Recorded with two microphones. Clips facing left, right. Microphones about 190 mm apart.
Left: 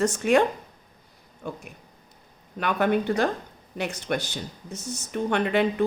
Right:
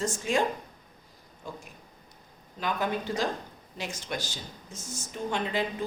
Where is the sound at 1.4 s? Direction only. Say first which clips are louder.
Left 6 dB; 60° left (ahead or behind).